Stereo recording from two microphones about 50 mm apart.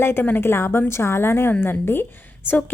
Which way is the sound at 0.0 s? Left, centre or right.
Left.